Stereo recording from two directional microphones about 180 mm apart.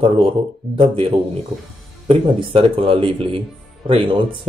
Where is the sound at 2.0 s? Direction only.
30° right (ahead or behind).